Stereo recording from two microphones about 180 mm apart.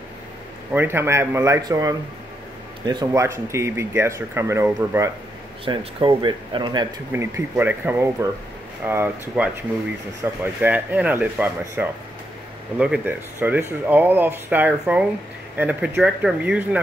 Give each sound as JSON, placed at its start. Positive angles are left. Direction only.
{"t": 0.7, "sound": "speech", "side_deg": -15}
{"t": 5.7, "sound": "speech", "side_deg": -30}
{"t": 7.1, "sound": "speech", "side_deg": -15}
{"t": 10.4, "sound": "speech", "side_deg": -10}